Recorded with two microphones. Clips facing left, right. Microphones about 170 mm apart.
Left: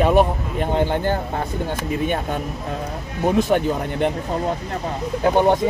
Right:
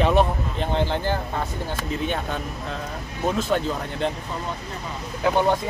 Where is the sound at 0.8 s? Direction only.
50° left (ahead or behind).